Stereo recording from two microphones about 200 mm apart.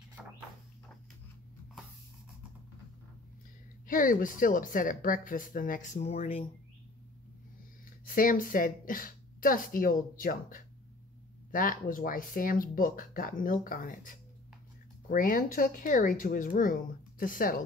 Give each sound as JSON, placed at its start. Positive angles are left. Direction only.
{"t": 0.2, "sound": "a sound", "side_deg": -5}
{"t": 3.8, "sound": "speech", "side_deg": 45}
{"t": 8.0, "sound": "speech", "side_deg": 45}